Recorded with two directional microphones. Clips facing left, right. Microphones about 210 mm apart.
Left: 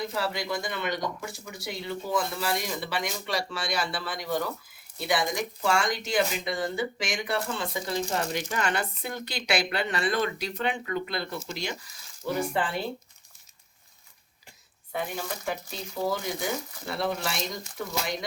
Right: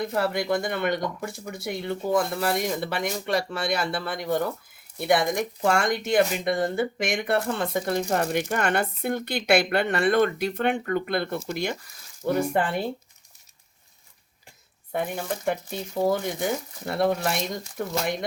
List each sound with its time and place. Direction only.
0.0 s speech: 55° right (ahead or behind)
14.9 s speech: 50° right (ahead or behind)